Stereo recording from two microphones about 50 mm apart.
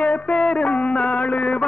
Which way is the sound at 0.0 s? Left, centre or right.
Left.